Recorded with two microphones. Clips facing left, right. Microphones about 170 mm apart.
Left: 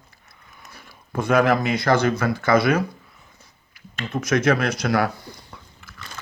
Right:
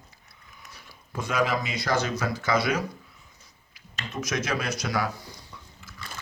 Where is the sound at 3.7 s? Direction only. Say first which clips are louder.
Left 6 dB; 55° left (ahead or behind).